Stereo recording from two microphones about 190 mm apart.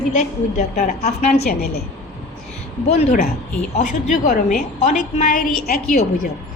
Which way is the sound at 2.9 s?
35° left (ahead or behind).